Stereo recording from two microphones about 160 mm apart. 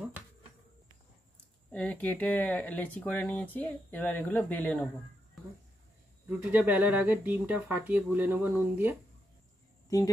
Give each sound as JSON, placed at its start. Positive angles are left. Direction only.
{"t": 1.7, "sound": "speech", "side_deg": 10}
{"t": 6.2, "sound": "speech", "side_deg": -10}
{"t": 9.8, "sound": "speech", "side_deg": 20}